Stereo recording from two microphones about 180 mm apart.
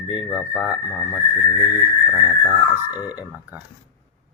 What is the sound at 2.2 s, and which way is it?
Speech, 15° left (ahead or behind).